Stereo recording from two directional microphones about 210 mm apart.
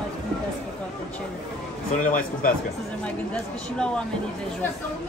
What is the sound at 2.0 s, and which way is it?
Speech, 40° left (ahead or behind).